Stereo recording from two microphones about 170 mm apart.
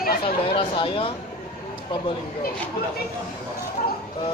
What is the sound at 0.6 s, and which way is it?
Speech, 30° left (ahead or behind).